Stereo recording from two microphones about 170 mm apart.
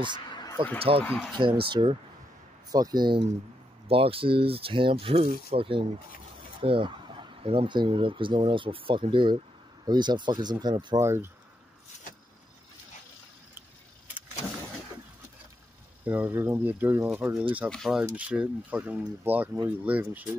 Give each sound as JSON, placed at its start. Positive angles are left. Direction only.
{"t": 0.3, "sound": "a sound", "side_deg": 25}
{"t": 0.7, "sound": "speech", "side_deg": -35}
{"t": 16.1, "sound": "speech", "side_deg": -15}
{"t": 17.6, "sound": "speech", "side_deg": 0}